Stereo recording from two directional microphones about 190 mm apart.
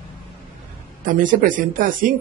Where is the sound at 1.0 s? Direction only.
45° right (ahead or behind).